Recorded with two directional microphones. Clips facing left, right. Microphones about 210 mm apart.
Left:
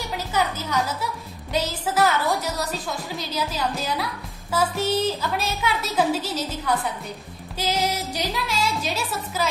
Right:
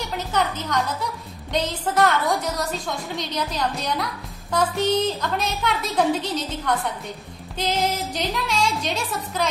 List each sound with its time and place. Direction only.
0.3 s music: 5° left (ahead or behind)
1.0 s a woman's voice: 5° left (ahead or behind)
7.7 s music: 50° right (ahead or behind)
8.1 s speech: 5° left (ahead or behind)